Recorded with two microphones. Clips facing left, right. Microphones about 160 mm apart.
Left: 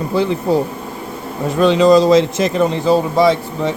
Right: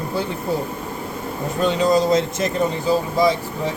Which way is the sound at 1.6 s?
90° left.